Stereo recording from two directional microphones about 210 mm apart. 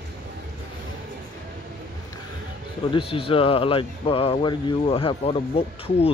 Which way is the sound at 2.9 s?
25° left (ahead or behind).